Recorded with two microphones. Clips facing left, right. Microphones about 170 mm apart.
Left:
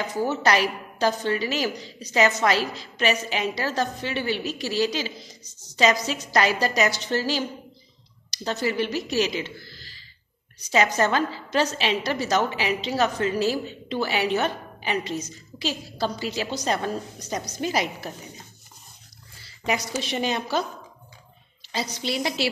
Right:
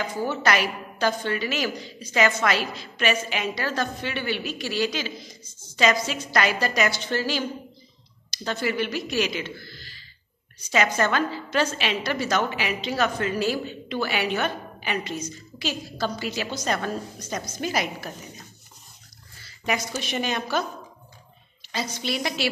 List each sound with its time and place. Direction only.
0.3 s a woman's voice: 30° left (ahead or behind)
8.5 s a woman's voice: 35° left (ahead or behind)
20.0 s a woman's voice: 30° left (ahead or behind)
21.7 s a woman's voice: 35° left (ahead or behind)